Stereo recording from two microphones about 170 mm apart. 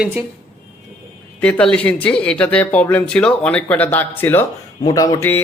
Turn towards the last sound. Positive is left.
turn(degrees=15)  # may be behind; listen again after turning